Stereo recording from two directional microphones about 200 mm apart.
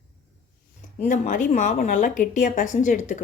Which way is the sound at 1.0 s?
40° left (ahead or behind).